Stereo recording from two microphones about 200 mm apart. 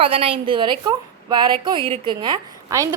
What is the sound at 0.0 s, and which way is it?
A woman's voice, 25° right (ahead or behind).